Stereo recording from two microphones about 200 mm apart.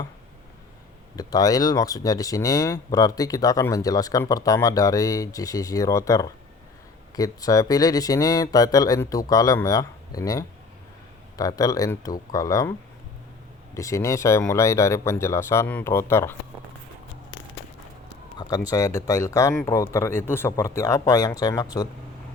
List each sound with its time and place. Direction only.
1.1 s speech: 20° left (ahead or behind)
13.7 s speech: 15° left (ahead or behind)
18.3 s a sound: 20° left (ahead or behind)
18.7 s speech: 15° left (ahead or behind)